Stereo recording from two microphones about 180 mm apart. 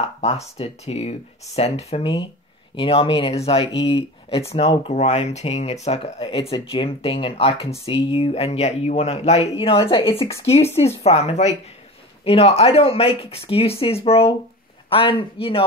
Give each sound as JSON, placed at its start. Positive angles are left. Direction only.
{"t": 0.6, "sound": "speech", "side_deg": 35}